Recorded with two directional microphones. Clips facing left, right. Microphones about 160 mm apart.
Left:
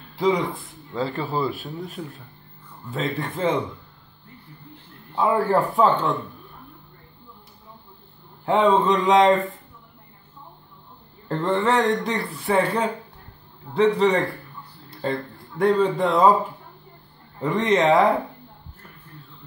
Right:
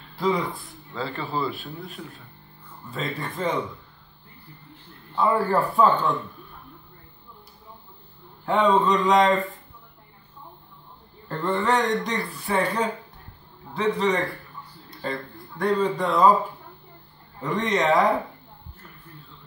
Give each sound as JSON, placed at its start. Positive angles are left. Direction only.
{"t": 0.1, "sound": "speech", "side_deg": 20}
{"t": 0.9, "sound": "a man's voice", "side_deg": 40}
{"t": 2.9, "sound": "speech", "side_deg": 20}
{"t": 5.1, "sound": "speech", "side_deg": 15}
{"t": 8.5, "sound": "speech", "side_deg": 25}
{"t": 11.2, "sound": "a man's voice", "side_deg": 25}
{"t": 17.4, "sound": "speech", "side_deg": 30}